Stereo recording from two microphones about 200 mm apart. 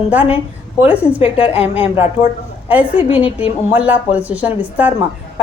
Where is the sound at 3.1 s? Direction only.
25° left (ahead or behind).